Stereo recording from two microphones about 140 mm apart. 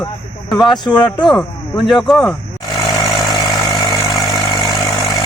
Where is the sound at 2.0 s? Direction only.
5° left (ahead or behind).